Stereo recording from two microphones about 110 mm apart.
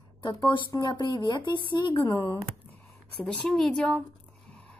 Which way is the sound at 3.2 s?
5° left (ahead or behind).